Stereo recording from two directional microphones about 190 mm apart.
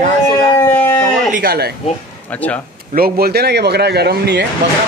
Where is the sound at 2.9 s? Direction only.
55° right (ahead or behind).